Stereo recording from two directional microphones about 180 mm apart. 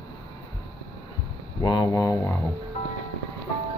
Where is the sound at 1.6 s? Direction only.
25° left (ahead or behind).